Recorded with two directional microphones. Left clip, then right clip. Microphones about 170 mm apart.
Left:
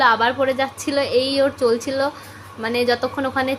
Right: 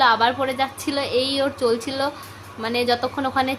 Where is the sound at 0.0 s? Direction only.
10° left (ahead or behind).